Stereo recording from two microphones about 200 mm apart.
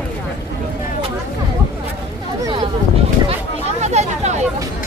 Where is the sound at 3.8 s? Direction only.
35° right (ahead or behind).